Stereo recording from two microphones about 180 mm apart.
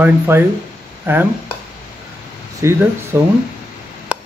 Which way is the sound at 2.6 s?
15° right (ahead or behind).